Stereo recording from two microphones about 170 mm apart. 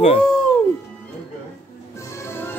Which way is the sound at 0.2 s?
5° left (ahead or behind).